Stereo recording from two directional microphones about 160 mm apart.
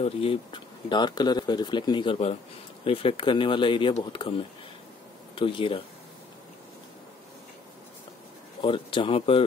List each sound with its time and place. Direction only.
0.0 s speech: 35° left (ahead or behind)
8.6 s speech: 35° left (ahead or behind)